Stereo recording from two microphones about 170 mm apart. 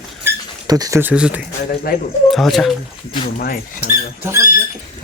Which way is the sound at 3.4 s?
65° left (ahead or behind).